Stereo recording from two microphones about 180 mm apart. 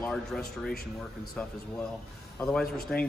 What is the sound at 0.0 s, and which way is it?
A man's voice, 5° left (ahead or behind).